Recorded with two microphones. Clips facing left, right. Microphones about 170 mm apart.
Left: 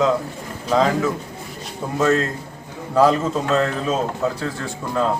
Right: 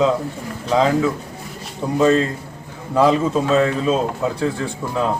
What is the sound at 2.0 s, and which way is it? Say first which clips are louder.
A man's voice: right 3 dB; 15° right (ahead or behind).